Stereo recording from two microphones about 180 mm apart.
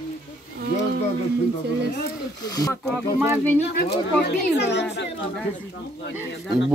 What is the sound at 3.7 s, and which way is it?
Speech, 65° left (ahead or behind).